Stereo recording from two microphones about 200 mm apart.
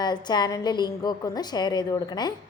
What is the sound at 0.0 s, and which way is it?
A woman's voice, 20° left (ahead or behind).